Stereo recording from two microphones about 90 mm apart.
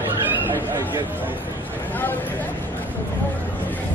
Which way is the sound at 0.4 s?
25° right (ahead or behind).